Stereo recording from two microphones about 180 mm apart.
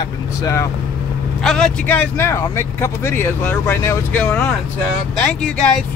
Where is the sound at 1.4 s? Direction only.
5° left (ahead or behind).